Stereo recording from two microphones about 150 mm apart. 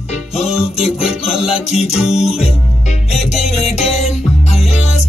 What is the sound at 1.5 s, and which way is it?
Music, 45° left (ahead or behind).